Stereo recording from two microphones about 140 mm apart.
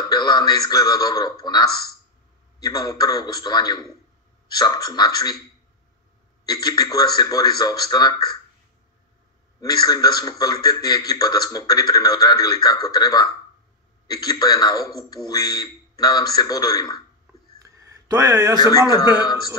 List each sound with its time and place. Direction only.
0.0 s a man's voice: 30° left (ahead or behind)
6.4 s a man's voice: 30° left (ahead or behind)
9.6 s a man's voice: 25° left (ahead or behind)
17.6 s a sound: 25° right (ahead or behind)
18.6 s a man's voice: 25° left (ahead or behind)